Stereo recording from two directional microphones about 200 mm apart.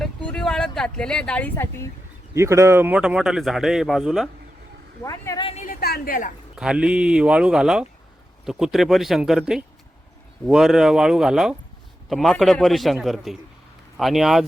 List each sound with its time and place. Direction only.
0.0 s a sound: 5° left (ahead or behind)
2.3 s a man's voice: 15° right (ahead or behind)
5.0 s a woman's voice: 15° left (ahead or behind)
5.6 s a woman's voice: 50° left (ahead or behind)
6.6 s a man's voice: 5° right (ahead or behind)